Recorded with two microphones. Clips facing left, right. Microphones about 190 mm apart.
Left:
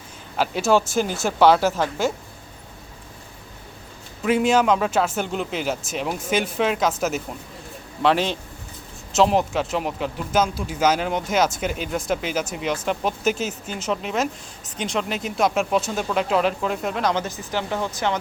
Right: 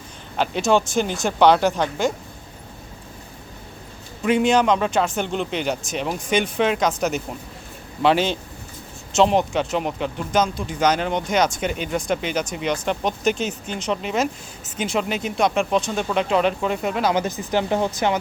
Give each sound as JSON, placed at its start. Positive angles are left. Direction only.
{"t": 0.3, "sound": "speech", "side_deg": 5}
{"t": 4.2, "sound": "speech", "side_deg": 5}
{"t": 17.2, "sound": "speech", "side_deg": -20}